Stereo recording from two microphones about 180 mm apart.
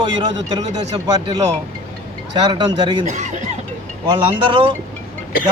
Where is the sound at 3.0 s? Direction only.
40° right (ahead or behind).